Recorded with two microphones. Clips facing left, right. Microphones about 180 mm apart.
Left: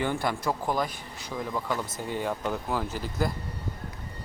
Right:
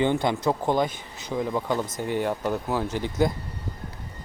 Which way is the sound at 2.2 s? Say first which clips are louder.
Right 4 dB; 10° right (ahead or behind).